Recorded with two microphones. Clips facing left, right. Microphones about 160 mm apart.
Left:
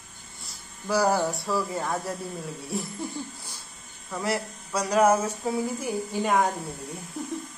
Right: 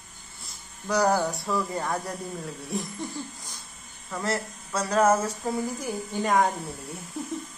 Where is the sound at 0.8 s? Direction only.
5° left (ahead or behind).